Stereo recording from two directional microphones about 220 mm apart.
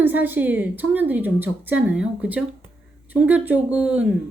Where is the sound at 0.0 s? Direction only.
10° right (ahead or behind).